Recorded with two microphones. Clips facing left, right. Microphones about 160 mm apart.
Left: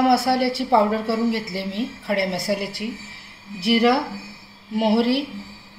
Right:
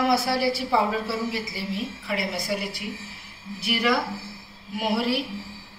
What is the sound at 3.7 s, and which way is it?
A woman's voice, 30° left (ahead or behind).